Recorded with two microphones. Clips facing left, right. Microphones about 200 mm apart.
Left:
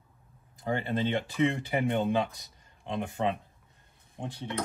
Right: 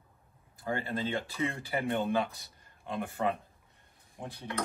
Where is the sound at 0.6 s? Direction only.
20° left (ahead or behind).